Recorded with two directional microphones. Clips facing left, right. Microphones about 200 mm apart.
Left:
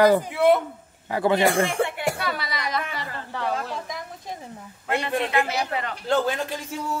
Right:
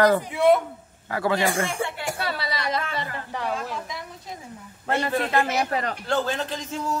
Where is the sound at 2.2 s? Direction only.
30° right (ahead or behind).